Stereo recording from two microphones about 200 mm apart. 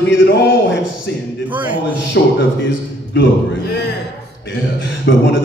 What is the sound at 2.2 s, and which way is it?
Mantra, 60° left (ahead or behind).